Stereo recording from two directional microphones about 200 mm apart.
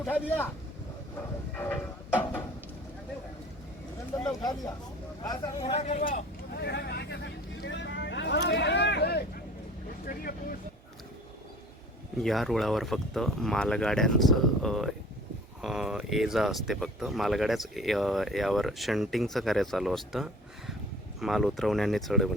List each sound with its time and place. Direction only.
1.5 s a sound: 10° left (ahead or behind)
4.1 s speech: 15° left (ahead or behind); by 6.2 s 35° left (ahead or behind)
6.5 s vehicle: 55° left (ahead or behind)
10.1 s speech: 45° left (ahead or behind)
12.2 s speech: centre (ahead or behind)